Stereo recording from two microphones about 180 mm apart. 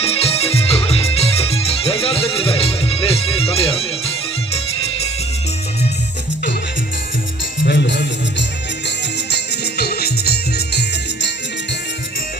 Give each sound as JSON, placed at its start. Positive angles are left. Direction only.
{"t": 0.0, "sound": "music", "side_deg": 35}
{"t": 7.6, "sound": "music", "side_deg": 70}